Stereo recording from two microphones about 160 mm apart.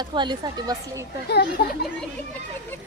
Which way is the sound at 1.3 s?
90° left.